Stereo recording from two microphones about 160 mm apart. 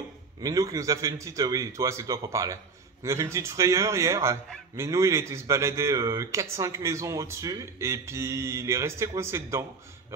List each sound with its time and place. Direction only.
0.4 s a man's voice: 20° right (ahead or behind)